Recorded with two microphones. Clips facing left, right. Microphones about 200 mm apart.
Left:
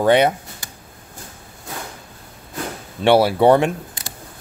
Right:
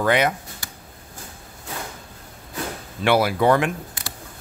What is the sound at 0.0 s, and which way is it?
Speech, 30° left (ahead or behind).